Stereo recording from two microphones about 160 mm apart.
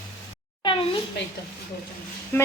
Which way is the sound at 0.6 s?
30° left (ahead or behind).